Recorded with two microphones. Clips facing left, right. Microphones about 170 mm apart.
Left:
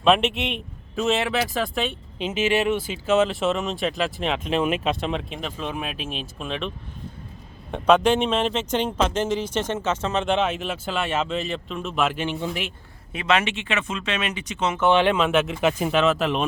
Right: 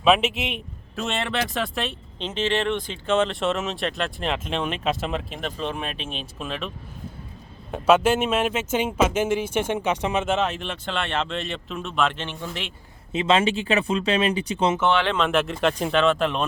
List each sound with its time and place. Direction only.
0.0 s speech: centre (ahead or behind)
13.1 s speech: 25° right (ahead or behind)
14.8 s speech: 15° left (ahead or behind)